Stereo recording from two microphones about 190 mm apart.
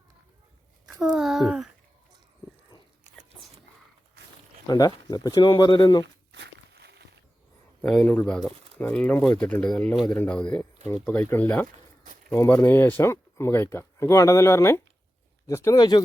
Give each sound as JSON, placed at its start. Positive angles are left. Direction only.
{"t": 0.9, "sound": "a sound", "side_deg": 0}
{"t": 4.7, "sound": "speech", "side_deg": 20}
{"t": 6.3, "sound": "walk", "side_deg": -60}
{"t": 7.8, "sound": "speech", "side_deg": 5}